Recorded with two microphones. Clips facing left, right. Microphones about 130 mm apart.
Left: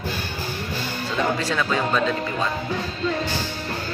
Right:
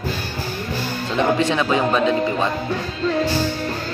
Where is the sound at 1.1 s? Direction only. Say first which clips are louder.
Right 5 dB; 20° right (ahead or behind).